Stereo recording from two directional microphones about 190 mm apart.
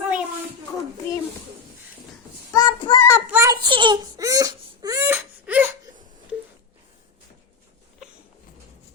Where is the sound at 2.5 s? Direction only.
20° left (ahead or behind).